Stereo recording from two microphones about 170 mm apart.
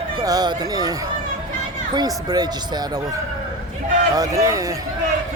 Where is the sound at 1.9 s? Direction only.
25° right (ahead or behind).